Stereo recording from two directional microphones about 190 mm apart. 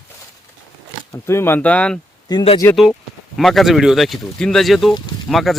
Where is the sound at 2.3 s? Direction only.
25° left (ahead or behind).